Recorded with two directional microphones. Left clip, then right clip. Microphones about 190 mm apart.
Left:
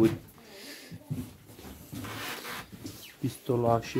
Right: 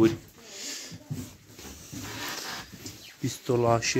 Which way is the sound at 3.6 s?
20° right (ahead or behind).